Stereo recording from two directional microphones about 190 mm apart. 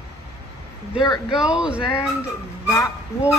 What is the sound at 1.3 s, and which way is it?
Speech, 5° right (ahead or behind).